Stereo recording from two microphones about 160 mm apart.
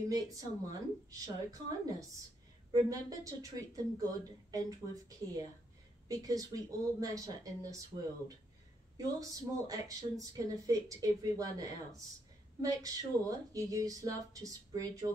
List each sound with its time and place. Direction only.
0.1 s speech: 20° right (ahead or behind)
8.9 s speech: 20° right (ahead or behind)